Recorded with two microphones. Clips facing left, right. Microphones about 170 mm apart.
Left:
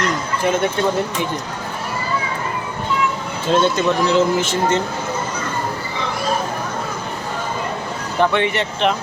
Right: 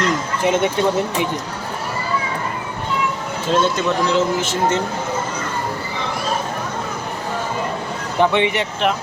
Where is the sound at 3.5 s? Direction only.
Centre (ahead or behind).